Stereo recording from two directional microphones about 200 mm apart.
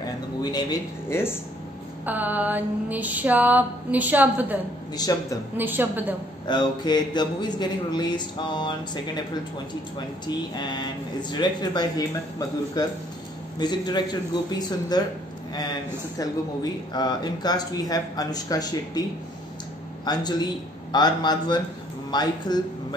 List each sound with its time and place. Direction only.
0.4 s speech: 20° left (ahead or behind)
2.0 s a sound: 10° right (ahead or behind)
4.9 s speech: 20° left (ahead or behind)
5.6 s a sound: 10° right (ahead or behind)
6.4 s speech: 20° left (ahead or behind)
20.1 s speech: 20° left (ahead or behind)